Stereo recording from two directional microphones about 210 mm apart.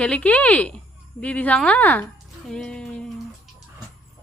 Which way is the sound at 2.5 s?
5° left (ahead or behind).